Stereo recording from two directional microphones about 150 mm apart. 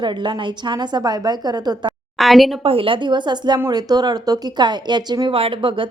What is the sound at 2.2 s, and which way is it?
Speech, centre (ahead or behind).